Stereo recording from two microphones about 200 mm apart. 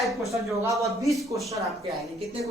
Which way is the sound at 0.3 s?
15° right (ahead or behind).